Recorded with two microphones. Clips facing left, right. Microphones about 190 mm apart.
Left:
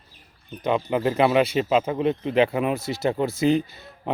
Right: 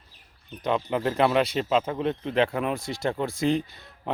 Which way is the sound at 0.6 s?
5° left (ahead or behind).